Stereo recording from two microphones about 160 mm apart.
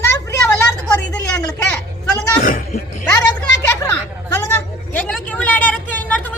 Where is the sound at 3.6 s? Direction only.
15° left (ahead or behind).